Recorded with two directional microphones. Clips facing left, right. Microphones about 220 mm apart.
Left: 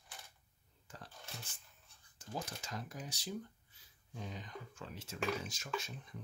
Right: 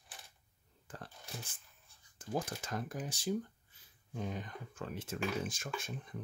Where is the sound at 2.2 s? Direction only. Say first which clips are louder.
Right 6 dB; 55° right (ahead or behind).